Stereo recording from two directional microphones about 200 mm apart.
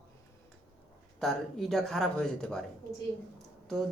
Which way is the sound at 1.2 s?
Centre (ahead or behind).